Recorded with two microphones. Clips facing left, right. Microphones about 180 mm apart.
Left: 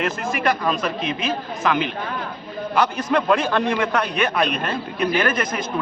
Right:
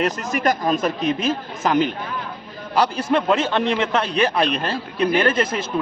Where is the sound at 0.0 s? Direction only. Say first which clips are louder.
Right 2 dB; 40° right (ahead or behind).